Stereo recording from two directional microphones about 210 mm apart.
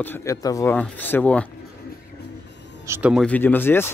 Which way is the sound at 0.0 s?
10° left (ahead or behind).